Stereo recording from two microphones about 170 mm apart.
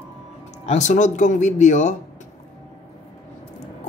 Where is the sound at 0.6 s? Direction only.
45° left (ahead or behind).